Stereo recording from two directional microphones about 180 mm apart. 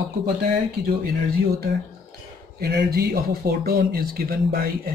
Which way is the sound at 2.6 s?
60° right (ahead or behind).